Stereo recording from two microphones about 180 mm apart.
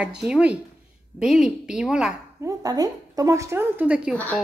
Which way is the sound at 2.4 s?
20° right (ahead or behind).